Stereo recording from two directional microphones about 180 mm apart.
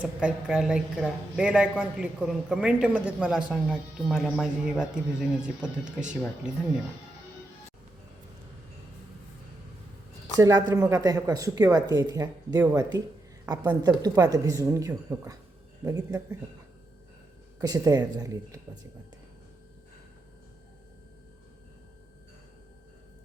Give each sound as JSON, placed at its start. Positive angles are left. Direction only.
{"t": 0.0, "sound": "speech", "side_deg": -5}
{"t": 10.4, "sound": "speech", "side_deg": -20}
{"t": 17.6, "sound": "speech", "side_deg": -20}